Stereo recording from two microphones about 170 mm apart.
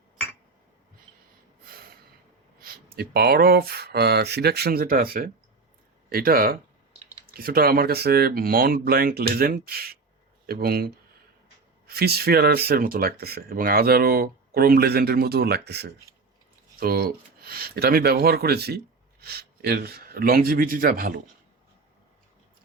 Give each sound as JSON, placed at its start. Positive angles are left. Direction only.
{"t": 2.6, "sound": "speech", "side_deg": -65}
{"t": 16.8, "sound": "speech", "side_deg": -60}